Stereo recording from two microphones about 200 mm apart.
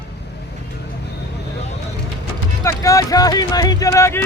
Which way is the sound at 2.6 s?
15° left (ahead or behind).